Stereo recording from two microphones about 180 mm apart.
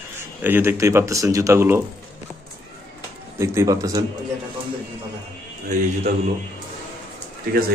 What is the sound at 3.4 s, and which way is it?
Speech, 15° right (ahead or behind).